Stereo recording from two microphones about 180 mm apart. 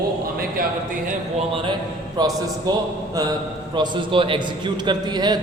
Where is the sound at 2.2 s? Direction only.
20° right (ahead or behind).